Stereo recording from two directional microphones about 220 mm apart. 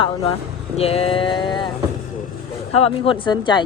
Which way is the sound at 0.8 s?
25° left (ahead or behind).